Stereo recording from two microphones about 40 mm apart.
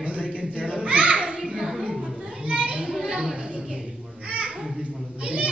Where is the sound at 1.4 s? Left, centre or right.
Centre.